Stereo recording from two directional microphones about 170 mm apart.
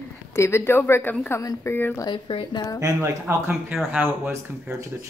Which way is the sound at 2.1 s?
30° left (ahead or behind).